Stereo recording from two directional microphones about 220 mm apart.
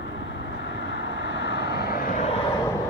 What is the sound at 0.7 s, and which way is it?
Vehicle, 50° left (ahead or behind).